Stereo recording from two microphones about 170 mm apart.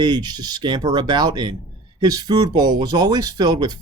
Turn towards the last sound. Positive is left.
turn(degrees=-25)  # may be behind; listen again after turning